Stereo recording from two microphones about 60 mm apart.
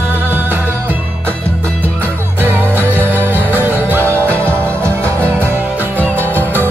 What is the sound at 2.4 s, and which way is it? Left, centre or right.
Music, right.